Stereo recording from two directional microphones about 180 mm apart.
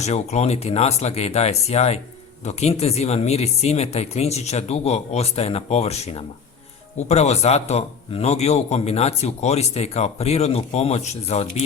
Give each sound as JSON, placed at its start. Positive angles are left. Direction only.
{"t": 0.0, "sound": "a man's voice", "side_deg": 40}